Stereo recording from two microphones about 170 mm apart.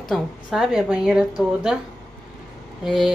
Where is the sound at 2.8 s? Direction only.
Centre (ahead or behind).